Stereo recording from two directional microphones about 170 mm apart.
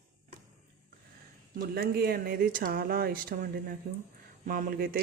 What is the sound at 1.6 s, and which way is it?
Speech, 65° right (ahead or behind).